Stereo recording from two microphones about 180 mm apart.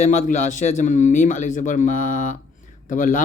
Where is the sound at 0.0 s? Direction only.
40° left (ahead or behind).